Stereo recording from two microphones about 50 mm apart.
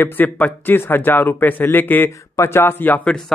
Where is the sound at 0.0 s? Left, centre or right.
Left.